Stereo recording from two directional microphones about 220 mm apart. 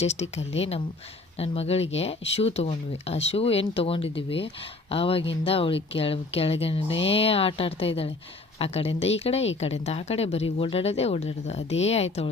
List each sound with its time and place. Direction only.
0.0 s speech: 30° left (ahead or behind)